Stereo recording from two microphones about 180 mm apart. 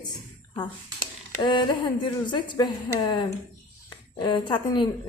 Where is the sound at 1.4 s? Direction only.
25° left (ahead or behind).